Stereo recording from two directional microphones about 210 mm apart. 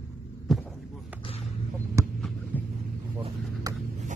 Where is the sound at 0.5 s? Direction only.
Centre (ahead or behind).